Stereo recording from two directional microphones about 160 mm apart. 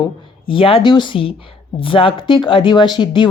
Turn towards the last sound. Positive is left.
turn(degrees=30)  # may be behind; listen again after turning